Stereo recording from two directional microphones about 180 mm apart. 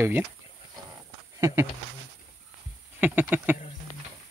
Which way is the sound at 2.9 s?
10° right (ahead or behind).